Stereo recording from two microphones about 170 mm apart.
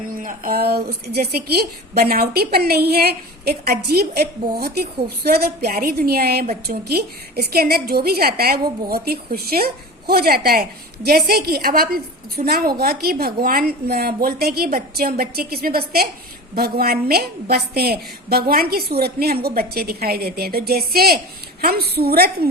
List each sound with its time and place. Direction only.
0.1 s a woman's voice: 55° right (ahead or behind)